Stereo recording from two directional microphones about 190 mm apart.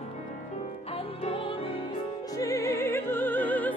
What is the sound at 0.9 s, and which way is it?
Music, 30° left (ahead or behind).